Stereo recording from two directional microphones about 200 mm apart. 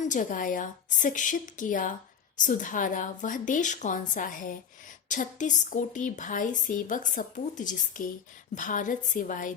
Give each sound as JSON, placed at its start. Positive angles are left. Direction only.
{"t": 0.0, "sound": "speech", "side_deg": 40}